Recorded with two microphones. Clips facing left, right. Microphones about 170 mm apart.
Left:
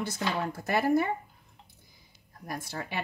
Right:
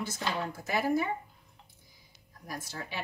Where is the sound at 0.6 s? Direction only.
60° left (ahead or behind).